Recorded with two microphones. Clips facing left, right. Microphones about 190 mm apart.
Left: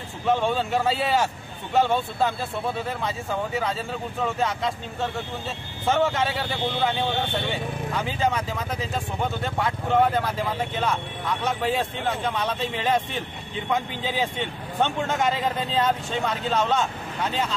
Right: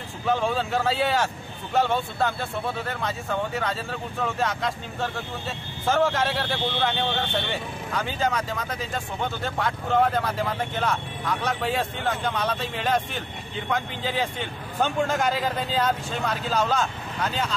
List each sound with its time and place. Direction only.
0.2 s speech: centre (ahead or behind)